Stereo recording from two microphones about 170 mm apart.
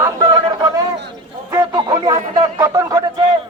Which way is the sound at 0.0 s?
20° right (ahead or behind).